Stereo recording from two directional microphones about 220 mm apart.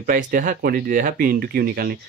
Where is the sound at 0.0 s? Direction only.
40° right (ahead or behind).